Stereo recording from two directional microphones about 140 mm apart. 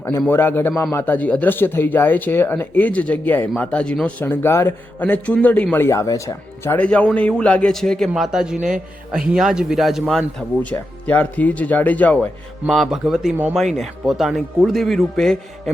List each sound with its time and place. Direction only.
0.2 s a man's voice: 15° left (ahead or behind)
6.7 s a man's voice: 10° left (ahead or behind)
12.6 s speech: centre (ahead or behind)